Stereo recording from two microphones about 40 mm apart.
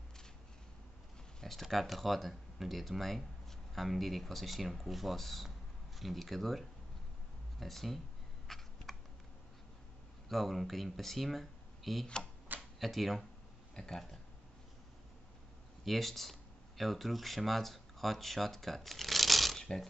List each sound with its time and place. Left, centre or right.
1.4 s speech: centre
7.6 s speech: centre
8.5 s a sound: centre
10.2 s speech: centre
12.5 s a sound: centre
13.7 s speech: centre
15.8 s speech: centre
19.6 s speech: centre